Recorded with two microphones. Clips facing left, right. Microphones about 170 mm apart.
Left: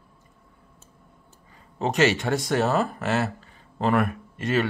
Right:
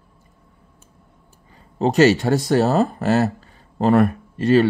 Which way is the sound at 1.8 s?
35° right (ahead or behind).